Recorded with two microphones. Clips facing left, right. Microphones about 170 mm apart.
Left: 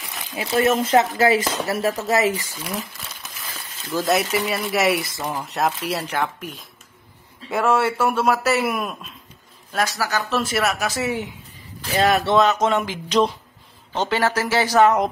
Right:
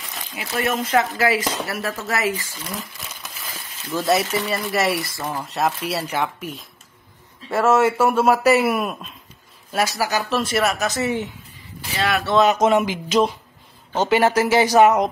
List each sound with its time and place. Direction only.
0.4 s speech: 25° left (ahead or behind)
4.0 s speech: centre (ahead or behind)
5.2 s speech: 10° left (ahead or behind)
5.5 s speech: centre (ahead or behind)
10.3 s speech: centre (ahead or behind)
12.0 s speech: 40° left (ahead or behind)
12.4 s speech: 10° right (ahead or behind)